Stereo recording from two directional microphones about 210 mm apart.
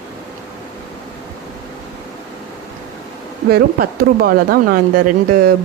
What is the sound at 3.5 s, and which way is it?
Speech, 45° right (ahead or behind).